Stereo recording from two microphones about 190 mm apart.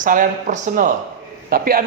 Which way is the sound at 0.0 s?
45° right (ahead or behind).